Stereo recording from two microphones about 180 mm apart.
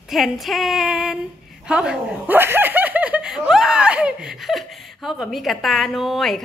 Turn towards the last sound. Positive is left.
turn(degrees=0)  # may be behind; listen again after turning